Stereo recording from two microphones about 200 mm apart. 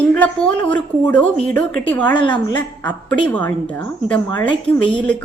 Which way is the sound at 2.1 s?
25° left (ahead or behind).